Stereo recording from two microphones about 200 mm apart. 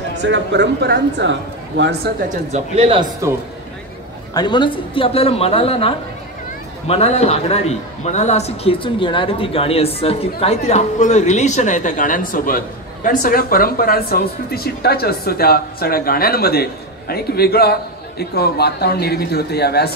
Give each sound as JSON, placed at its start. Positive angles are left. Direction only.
{"t": 0.2, "sound": "speech", "side_deg": -65}
{"t": 2.2, "sound": "speech", "side_deg": -35}
{"t": 4.3, "sound": "a woman's voice", "side_deg": 20}